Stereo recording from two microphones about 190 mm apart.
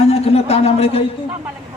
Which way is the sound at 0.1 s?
30° left (ahead or behind).